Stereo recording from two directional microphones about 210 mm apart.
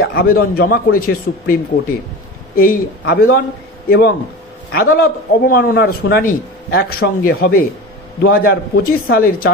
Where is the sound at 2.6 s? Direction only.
45° left (ahead or behind).